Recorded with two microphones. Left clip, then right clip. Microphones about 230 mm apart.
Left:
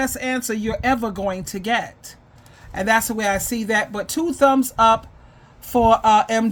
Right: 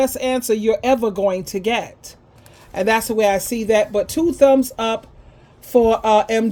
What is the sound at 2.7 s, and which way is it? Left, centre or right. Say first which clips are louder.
Speech: right 1 dB; left.